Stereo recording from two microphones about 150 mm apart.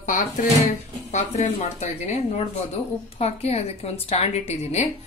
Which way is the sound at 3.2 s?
45° left (ahead or behind).